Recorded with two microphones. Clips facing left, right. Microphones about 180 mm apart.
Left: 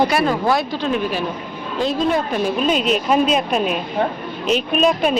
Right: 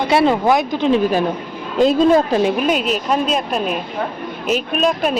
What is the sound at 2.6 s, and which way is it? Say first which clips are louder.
Speech: even; 5° right (ahead or behind).